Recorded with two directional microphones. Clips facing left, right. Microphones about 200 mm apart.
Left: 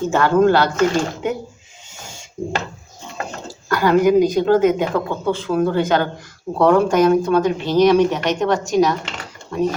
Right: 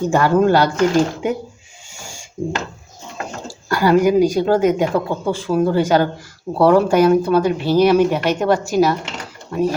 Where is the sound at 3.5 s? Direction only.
10° right (ahead or behind).